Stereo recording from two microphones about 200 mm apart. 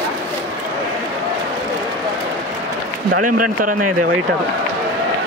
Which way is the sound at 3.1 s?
45° right (ahead or behind).